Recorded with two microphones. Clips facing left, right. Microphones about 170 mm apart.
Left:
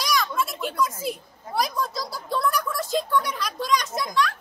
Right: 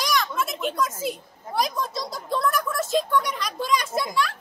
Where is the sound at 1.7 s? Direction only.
20° right (ahead or behind).